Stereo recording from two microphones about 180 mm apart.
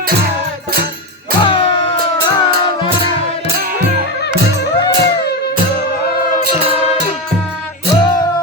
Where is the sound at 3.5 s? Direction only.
55° right (ahead or behind).